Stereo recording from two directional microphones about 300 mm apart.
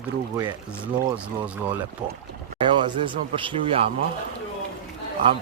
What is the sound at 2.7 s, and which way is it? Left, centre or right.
Speech, centre.